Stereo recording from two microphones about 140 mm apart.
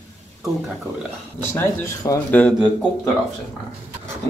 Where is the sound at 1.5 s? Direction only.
20° left (ahead or behind).